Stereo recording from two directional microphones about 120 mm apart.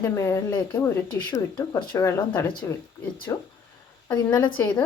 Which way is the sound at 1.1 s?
30° left (ahead or behind).